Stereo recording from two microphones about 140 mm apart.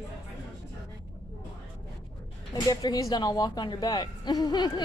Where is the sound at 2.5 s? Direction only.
25° left (ahead or behind).